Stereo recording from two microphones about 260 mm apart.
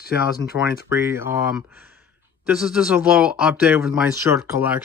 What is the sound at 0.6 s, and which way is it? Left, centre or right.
Speech, centre.